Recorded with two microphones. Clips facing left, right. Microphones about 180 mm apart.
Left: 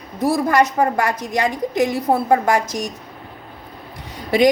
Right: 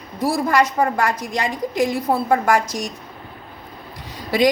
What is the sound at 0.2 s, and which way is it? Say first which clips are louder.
A woman's voice: left 2 dB; 20° left (ahead or behind).